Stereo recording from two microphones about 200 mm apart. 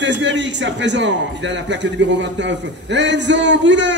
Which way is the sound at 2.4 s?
65° right (ahead or behind).